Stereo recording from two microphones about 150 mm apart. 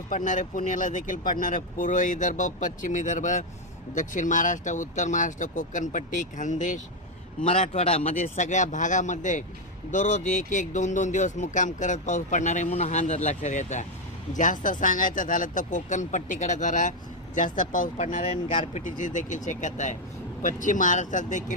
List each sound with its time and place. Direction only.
0.1 s speech: 60° left (ahead or behind)